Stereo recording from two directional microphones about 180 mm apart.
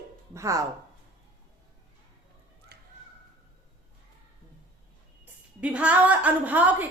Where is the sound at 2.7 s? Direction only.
65° right (ahead or behind).